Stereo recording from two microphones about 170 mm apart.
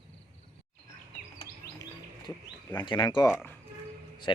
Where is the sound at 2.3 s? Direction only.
25° left (ahead or behind).